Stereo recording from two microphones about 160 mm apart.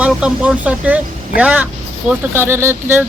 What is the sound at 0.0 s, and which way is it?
Speech, 5° right (ahead or behind).